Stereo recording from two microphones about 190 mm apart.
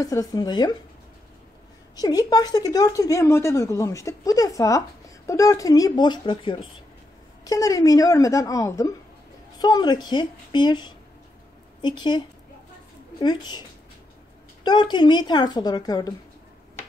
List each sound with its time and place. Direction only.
0.0 s speech: 20° left (ahead or behind)
2.0 s speech: 20° left (ahead or behind)
13.2 s speech: 20° left (ahead or behind)